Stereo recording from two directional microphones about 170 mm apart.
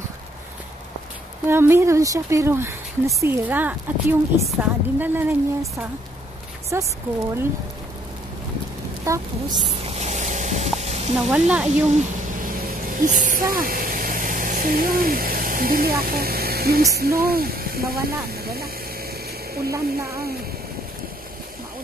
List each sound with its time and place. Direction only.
1.5 s a woman's voice: 15° right (ahead or behind)
9.0 s a woman's voice: 20° right (ahead or behind)
9.8 s vehicle: 40° right (ahead or behind)
10.8 s sizzle: 40° right (ahead or behind)
11.1 s a woman's voice: 5° right (ahead or behind)
13.0 s speech: 50° right (ahead or behind)
19.7 s a woman's voice: 15° right (ahead or behind)